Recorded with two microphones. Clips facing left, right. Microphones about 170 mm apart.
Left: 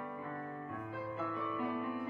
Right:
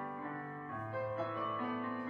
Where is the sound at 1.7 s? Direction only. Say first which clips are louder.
Left 1 dB; 15° left (ahead or behind).